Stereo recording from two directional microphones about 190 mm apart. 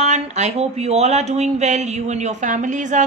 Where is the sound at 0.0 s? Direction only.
35° right (ahead or behind).